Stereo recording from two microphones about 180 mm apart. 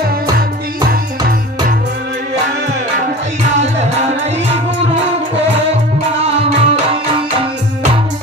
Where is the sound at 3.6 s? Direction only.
40° right (ahead or behind).